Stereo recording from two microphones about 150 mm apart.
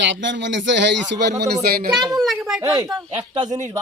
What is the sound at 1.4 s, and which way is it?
Speech, 90° right.